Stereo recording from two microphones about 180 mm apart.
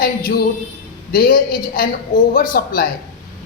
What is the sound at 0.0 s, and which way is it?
A man's voice, 50° left (ahead or behind).